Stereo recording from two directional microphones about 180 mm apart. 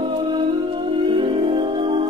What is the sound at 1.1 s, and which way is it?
Music, 30° right (ahead or behind).